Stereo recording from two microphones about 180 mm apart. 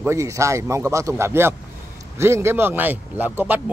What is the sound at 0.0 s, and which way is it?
A man's voice, 15° right (ahead or behind).